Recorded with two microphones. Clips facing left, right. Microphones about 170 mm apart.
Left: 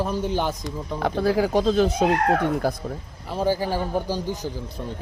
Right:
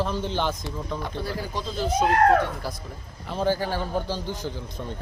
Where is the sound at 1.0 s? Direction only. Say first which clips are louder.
Left 10 dB; 85° left.